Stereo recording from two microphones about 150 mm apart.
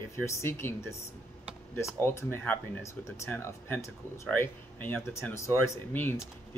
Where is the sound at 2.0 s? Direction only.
15° left (ahead or behind).